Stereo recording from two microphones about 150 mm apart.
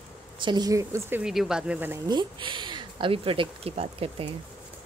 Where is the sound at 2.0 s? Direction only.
30° right (ahead or behind).